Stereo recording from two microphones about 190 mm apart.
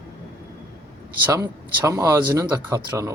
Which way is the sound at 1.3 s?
15° right (ahead or behind).